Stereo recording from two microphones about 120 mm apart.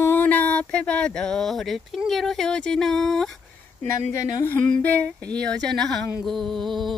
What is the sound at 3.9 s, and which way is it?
Speech, 20° left (ahead or behind).